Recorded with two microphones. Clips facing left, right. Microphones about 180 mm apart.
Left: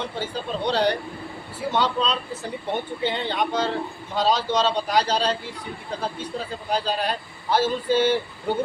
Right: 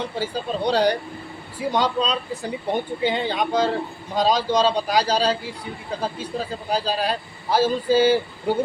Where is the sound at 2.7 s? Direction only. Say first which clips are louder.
Right 3 dB; 10° right (ahead or behind).